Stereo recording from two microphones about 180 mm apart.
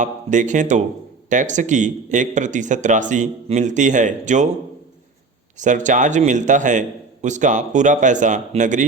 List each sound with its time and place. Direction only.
0.0 s a man's voice: 45° right (ahead or behind)
5.5 s a man's voice: 45° right (ahead or behind)